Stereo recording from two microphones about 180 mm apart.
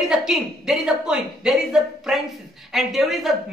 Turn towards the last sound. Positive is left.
turn(degrees=0)  # may be behind; listen again after turning